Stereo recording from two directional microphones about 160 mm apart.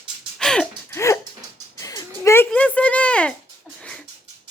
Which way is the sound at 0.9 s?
15° left (ahead or behind).